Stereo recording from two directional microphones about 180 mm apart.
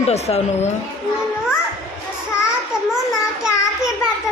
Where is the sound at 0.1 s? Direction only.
35° left (ahead or behind).